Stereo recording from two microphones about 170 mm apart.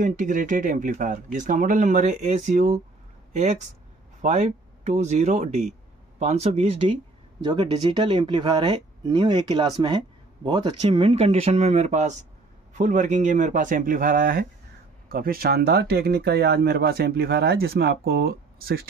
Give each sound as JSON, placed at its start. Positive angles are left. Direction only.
{"t": 0.0, "sound": "speech", "side_deg": -50}
{"t": 4.2, "sound": "speech", "side_deg": -45}